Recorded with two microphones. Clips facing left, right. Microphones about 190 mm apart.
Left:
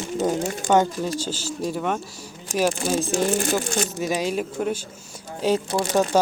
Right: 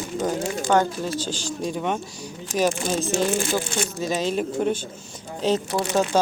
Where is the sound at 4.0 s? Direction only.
15° left (ahead or behind).